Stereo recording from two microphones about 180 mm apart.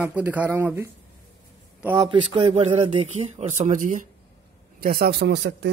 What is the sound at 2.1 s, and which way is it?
Speech, 30° right (ahead or behind).